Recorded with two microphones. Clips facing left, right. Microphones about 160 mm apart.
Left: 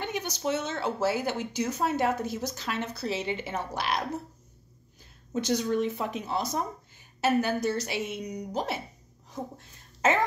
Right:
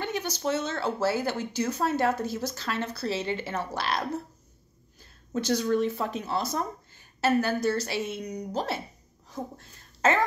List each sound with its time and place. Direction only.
0.0 s speech: 15° left (ahead or behind)
5.3 s speech: 20° left (ahead or behind)